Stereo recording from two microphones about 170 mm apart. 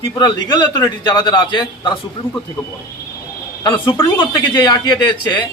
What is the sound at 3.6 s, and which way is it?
Speech, 25° left (ahead or behind).